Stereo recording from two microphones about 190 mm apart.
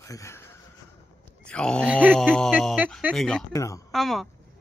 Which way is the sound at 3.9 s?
Centre (ahead or behind).